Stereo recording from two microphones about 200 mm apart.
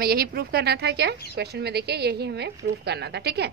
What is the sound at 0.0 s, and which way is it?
A woman's voice, 50° right (ahead or behind).